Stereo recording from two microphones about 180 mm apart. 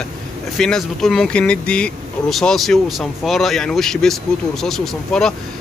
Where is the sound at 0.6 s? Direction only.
5° left (ahead or behind).